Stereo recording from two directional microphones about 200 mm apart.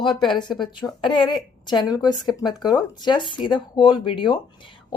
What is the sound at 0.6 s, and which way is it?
Speech, 20° left (ahead or behind).